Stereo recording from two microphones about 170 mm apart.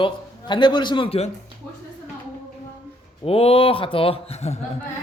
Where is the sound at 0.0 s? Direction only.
25° left (ahead or behind).